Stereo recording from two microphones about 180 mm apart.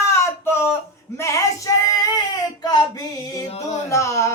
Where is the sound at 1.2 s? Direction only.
20° left (ahead or behind).